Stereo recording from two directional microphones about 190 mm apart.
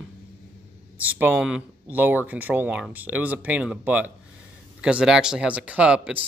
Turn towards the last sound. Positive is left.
turn(degrees=-5)  # may be behind; listen again after turning